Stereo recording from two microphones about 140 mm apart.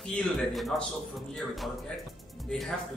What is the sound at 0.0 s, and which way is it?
A man's voice, 5° left (ahead or behind).